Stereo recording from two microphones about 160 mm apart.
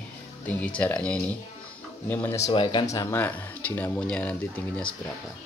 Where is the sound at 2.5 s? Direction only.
30° left (ahead or behind).